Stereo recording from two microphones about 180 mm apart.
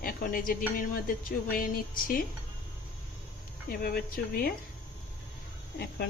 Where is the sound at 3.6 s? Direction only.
55° left (ahead or behind).